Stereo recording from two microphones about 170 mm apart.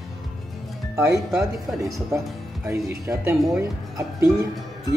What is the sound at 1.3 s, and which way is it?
Speech, centre (ahead or behind).